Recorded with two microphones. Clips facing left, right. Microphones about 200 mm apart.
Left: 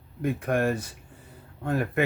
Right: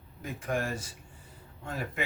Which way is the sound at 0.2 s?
60° left (ahead or behind).